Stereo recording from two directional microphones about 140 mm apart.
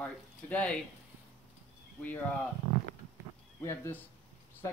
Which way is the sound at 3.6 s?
20° left (ahead or behind).